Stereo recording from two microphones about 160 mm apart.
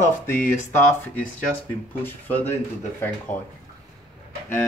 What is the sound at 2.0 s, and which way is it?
Speech, 10° left (ahead or behind).